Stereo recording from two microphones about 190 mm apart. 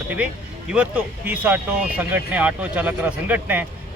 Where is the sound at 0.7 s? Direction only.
5° right (ahead or behind).